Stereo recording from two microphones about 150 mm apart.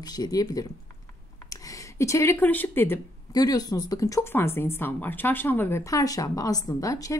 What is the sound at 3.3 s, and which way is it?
Speech, 25° left (ahead or behind).